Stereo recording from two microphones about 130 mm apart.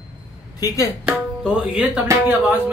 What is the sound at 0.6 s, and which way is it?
Speech, 30° left (ahead or behind).